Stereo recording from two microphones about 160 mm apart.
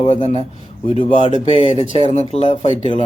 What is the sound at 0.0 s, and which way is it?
Speech, 35° left (ahead or behind).